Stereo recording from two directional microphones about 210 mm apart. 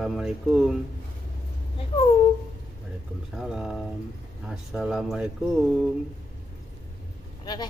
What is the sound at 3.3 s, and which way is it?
Speech, centre (ahead or behind).